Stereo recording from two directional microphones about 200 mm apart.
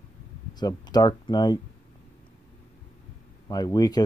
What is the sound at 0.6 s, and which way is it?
Speech, 20° left (ahead or behind).